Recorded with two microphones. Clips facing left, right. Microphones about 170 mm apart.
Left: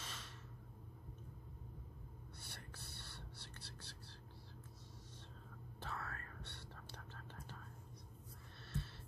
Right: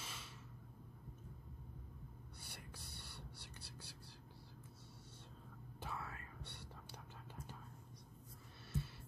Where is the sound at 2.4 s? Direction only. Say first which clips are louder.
Right 1 dB; 10° right (ahead or behind).